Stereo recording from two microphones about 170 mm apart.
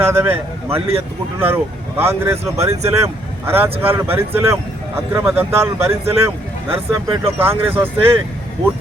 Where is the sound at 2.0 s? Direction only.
15° right (ahead or behind).